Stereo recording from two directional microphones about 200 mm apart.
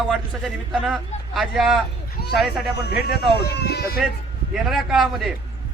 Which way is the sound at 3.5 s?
55° left (ahead or behind).